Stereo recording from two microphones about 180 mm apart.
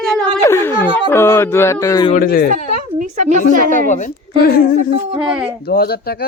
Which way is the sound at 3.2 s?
45° right (ahead or behind).